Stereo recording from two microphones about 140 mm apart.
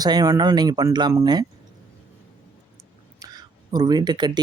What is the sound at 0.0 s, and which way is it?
Speech, 30° right (ahead or behind).